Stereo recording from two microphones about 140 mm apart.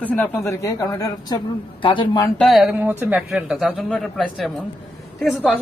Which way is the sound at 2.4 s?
Centre (ahead or behind).